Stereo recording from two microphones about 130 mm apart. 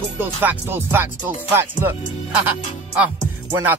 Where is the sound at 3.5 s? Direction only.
15° right (ahead or behind).